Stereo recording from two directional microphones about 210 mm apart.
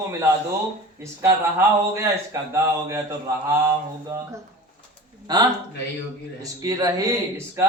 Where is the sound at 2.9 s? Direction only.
15° right (ahead or behind).